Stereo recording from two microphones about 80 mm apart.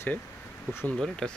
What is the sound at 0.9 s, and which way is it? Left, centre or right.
Speech, centre.